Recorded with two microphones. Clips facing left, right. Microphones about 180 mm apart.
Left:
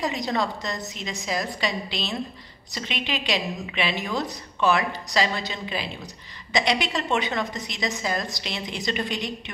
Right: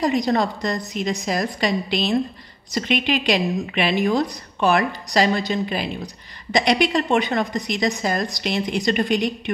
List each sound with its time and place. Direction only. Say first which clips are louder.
0.3 s a woman's voice: right 6 dB; 45° right (ahead or behind)